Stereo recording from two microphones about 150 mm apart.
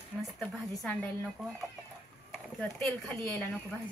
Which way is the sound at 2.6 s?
5° left (ahead or behind).